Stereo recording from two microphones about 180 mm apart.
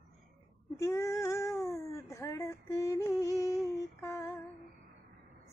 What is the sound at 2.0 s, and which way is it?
Female singing, 15° left (ahead or behind).